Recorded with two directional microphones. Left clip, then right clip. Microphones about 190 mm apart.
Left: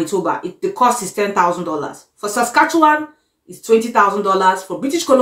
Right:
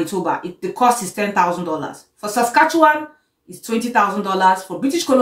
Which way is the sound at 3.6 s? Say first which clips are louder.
Left 4 dB; 5° left (ahead or behind).